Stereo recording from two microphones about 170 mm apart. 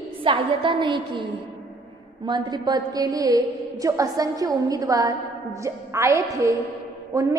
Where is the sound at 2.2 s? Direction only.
25° right (ahead or behind).